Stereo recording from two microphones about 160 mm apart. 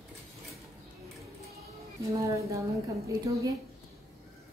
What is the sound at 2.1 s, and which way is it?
Speech, 20° right (ahead or behind).